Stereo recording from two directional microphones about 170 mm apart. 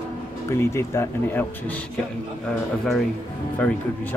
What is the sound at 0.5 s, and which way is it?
Speech, 15° left (ahead or behind).